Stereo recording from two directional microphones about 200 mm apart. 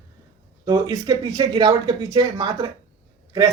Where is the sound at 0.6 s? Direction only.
20° right (ahead or behind).